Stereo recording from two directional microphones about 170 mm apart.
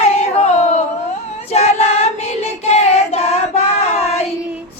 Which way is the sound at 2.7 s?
40° left (ahead or behind).